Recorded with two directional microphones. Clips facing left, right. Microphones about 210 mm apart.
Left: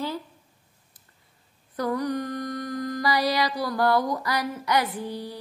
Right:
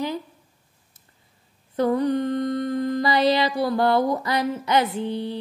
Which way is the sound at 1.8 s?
25° right (ahead or behind).